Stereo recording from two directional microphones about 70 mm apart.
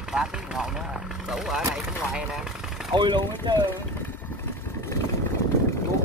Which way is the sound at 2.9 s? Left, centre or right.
Right.